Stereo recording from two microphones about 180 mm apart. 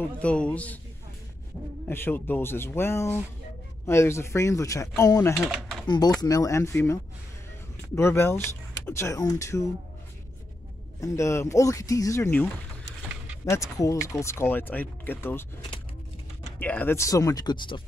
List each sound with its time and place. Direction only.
0.2 s speech: 5° left (ahead or behind)
1.9 s speech: 10° left (ahead or behind)
5.3 s speech: centre (ahead or behind)
5.9 s speech: 20° left (ahead or behind)
11.0 s speech: 15° left (ahead or behind)
13.5 s speech: 15° left (ahead or behind)
16.5 s speech: 10° left (ahead or behind); by 17.8 s 25° left (ahead or behind)